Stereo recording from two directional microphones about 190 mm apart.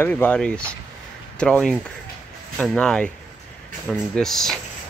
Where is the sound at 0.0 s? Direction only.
10° left (ahead or behind).